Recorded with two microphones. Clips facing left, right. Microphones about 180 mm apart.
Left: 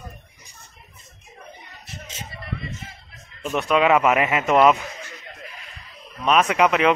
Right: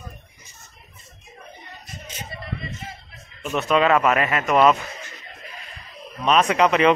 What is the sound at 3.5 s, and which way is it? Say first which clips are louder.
Speech: even; 10° left (ahead or behind).